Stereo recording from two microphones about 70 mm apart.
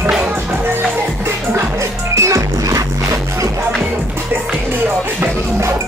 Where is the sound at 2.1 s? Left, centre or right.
Right.